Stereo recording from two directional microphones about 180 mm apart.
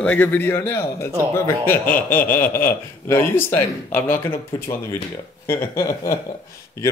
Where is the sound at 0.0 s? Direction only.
10° left (ahead or behind).